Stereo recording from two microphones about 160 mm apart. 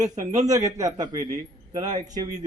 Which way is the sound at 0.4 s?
20° right (ahead or behind).